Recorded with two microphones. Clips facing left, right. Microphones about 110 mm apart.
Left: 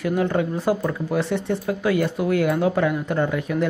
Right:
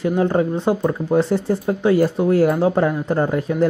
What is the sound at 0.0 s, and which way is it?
Speech, 30° right (ahead or behind).